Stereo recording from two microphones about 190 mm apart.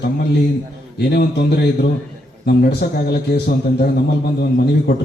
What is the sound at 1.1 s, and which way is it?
A man's voice, 55° left (ahead or behind).